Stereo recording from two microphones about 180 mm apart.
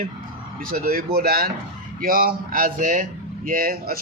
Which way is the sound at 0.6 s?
55° right (ahead or behind).